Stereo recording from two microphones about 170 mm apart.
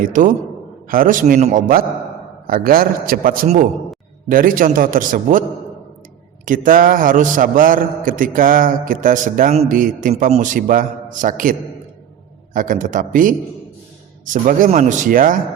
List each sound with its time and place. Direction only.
0.0 s a man's voice: 50° right (ahead or behind)
6.4 s a man's voice: 50° right (ahead or behind)
12.5 s a man's voice: 50° right (ahead or behind)